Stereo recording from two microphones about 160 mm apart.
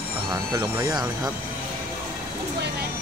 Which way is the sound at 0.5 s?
25° right (ahead or behind).